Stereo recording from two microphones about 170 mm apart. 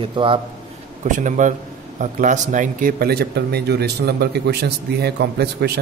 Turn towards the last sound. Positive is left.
turn(degrees=-75)  # may be behind; listen again after turning